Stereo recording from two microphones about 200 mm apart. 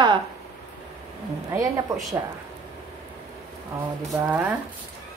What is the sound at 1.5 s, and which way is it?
Speech, 15° right (ahead or behind).